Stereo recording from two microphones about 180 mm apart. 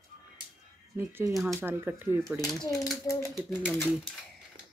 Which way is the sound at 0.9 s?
15° right (ahead or behind).